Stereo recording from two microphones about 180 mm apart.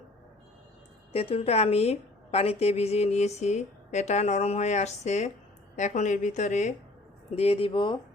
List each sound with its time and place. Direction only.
1.1 s a woman's voice: 35° left (ahead or behind)